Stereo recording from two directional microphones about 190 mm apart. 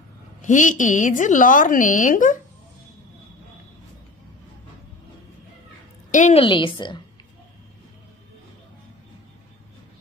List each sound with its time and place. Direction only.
0.4 s a woman's voice: 40° left (ahead or behind)
6.1 s a woman's voice: 40° left (ahead or behind)
6.4 s a woman's voice: 25° left (ahead or behind)